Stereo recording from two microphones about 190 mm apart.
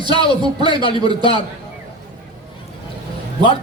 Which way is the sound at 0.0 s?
25° right (ahead or behind).